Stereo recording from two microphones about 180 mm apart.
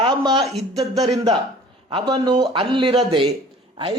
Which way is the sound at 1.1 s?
20° right (ahead or behind).